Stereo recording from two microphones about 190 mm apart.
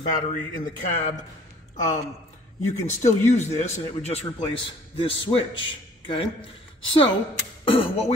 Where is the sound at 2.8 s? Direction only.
40° left (ahead or behind).